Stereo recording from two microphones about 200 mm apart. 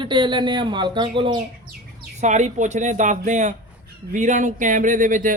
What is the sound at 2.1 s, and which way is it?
A man's voice, 35° right (ahead or behind).